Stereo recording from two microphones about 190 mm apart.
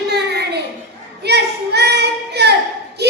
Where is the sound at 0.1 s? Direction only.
60° right (ahead or behind).